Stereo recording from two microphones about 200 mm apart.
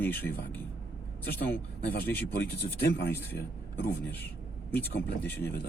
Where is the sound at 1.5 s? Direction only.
10° left (ahead or behind).